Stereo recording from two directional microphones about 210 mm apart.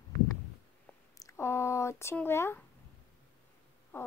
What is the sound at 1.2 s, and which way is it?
Speech, 10° left (ahead or behind).